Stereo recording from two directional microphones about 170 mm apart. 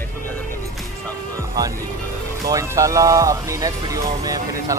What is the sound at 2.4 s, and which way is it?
Speech, 20° right (ahead or behind).